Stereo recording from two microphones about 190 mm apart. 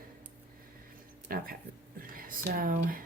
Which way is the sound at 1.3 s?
50° right (ahead or behind).